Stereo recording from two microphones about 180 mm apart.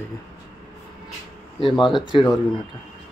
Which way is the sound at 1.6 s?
25° left (ahead or behind).